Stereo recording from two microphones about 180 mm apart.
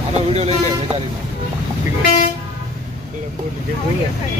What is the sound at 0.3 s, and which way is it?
Speech, 35° right (ahead or behind).